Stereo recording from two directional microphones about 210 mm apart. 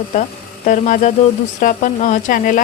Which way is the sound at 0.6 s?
35° left (ahead or behind).